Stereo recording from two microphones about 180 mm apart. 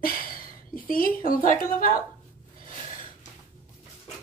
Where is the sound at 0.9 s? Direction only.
50° left (ahead or behind).